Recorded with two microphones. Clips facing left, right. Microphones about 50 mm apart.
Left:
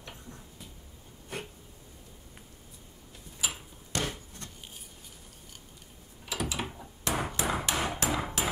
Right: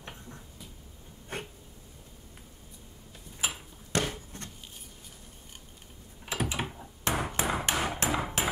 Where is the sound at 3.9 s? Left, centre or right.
Right.